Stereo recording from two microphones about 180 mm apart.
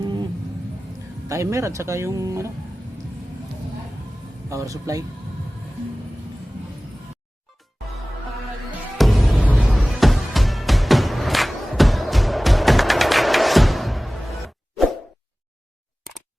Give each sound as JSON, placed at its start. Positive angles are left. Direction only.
{"t": 0.0, "sound": "a sound", "side_deg": -25}
{"t": 1.3, "sound": "speech", "side_deg": -15}
{"t": 4.4, "sound": "speech", "side_deg": -15}
{"t": 9.0, "sound": "music", "side_deg": 0}